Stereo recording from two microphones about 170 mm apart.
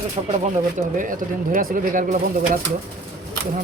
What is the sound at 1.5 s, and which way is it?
Speech, 55° right (ahead or behind).